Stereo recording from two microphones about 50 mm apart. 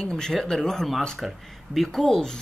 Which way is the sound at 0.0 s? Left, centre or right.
Centre.